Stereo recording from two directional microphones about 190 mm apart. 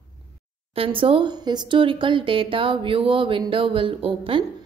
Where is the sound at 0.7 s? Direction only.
30° right (ahead or behind).